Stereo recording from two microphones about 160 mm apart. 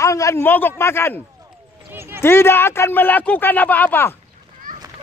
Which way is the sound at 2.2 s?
15° left (ahead or behind).